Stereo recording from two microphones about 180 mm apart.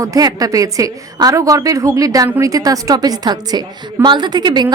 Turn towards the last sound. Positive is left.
turn(degrees=-25)  # may be behind; listen again after turning